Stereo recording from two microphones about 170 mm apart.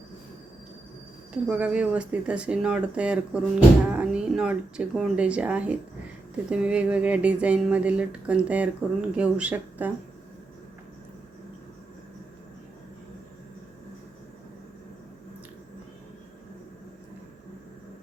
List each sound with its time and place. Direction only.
1.3 s speech: 10° right (ahead or behind)